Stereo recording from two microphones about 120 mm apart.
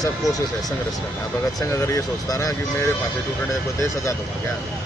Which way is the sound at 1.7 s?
25° left (ahead or behind).